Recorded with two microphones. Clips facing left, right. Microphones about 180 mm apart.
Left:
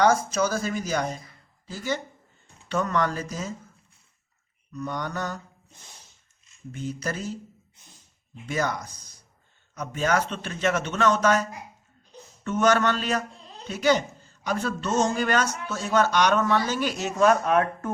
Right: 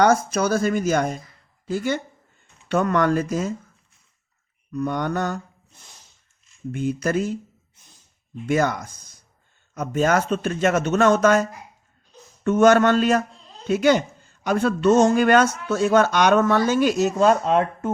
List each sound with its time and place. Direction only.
0.0 s speech: 60° right (ahead or behind)
4.7 s speech: 55° right (ahead or behind)
6.7 s speech: 55° right (ahead or behind)
8.4 s a man's voice: 50° right (ahead or behind)
12.5 s a man's voice: 50° right (ahead or behind); by 17.9 s 25° right (ahead or behind)